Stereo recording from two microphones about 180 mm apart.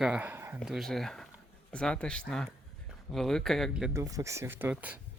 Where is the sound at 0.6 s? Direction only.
Centre (ahead or behind).